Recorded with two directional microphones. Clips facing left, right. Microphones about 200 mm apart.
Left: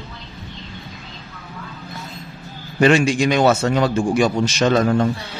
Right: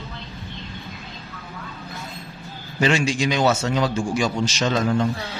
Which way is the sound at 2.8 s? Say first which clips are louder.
Left 6 dB; 55° left (ahead or behind).